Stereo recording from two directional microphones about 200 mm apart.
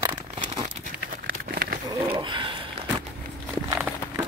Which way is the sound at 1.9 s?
20° right (ahead or behind).